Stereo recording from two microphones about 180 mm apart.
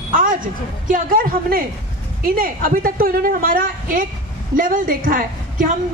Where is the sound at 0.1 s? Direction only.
50° right (ahead or behind).